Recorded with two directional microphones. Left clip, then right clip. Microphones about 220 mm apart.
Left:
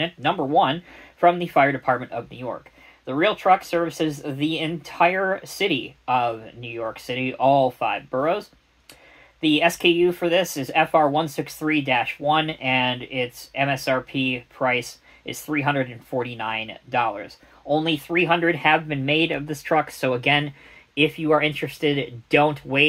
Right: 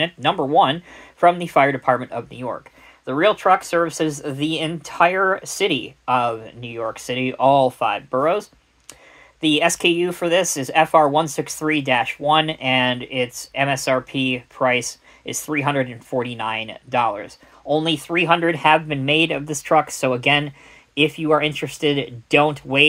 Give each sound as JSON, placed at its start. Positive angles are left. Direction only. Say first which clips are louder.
{"t": 0.0, "sound": "speech", "louder": "right 3 dB", "side_deg": -35}